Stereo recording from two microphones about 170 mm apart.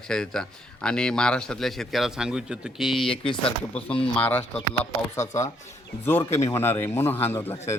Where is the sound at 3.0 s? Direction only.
30° left (ahead or behind).